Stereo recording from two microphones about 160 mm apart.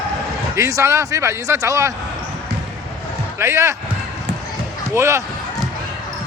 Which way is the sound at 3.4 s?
15° right (ahead or behind).